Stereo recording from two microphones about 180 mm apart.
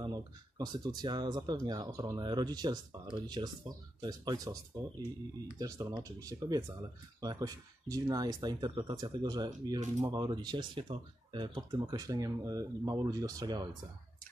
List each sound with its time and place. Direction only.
0.0 s speech: 20° right (ahead or behind)
5.6 s speech: 20° right (ahead or behind)